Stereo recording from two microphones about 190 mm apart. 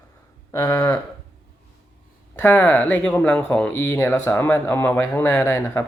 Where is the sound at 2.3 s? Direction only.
10° left (ahead or behind).